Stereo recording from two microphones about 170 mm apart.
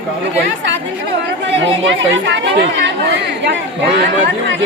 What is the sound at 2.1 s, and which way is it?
Speech, 90° right.